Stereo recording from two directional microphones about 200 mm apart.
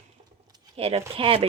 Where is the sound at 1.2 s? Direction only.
25° right (ahead or behind).